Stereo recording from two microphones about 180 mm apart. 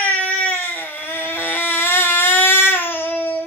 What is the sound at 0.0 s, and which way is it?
Baby cry, 10° left (ahead or behind).